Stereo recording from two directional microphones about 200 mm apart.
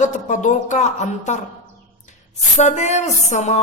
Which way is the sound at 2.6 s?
35° left (ahead or behind).